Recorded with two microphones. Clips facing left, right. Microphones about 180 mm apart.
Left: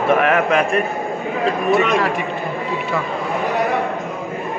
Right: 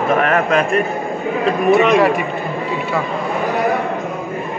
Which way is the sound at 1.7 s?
10° right (ahead or behind).